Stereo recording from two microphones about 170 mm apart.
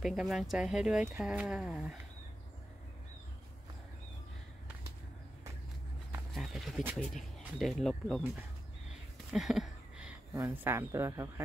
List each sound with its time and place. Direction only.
0.0 s speech: centre (ahead or behind)
6.3 s speech: centre (ahead or behind)
9.3 s a sound: centre (ahead or behind)
10.3 s speech: 15° right (ahead or behind)